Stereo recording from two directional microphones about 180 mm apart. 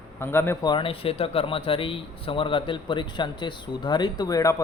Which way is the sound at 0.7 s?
30° left (ahead or behind).